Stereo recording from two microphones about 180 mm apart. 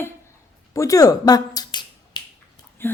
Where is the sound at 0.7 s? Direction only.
20° left (ahead or behind).